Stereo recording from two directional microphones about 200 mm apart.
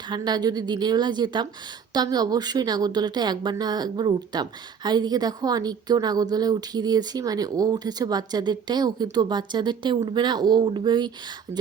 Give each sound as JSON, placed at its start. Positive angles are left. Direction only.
{"t": 0.1, "sound": "a woman's voice", "side_deg": -20}
{"t": 11.5, "sound": "speech", "side_deg": -65}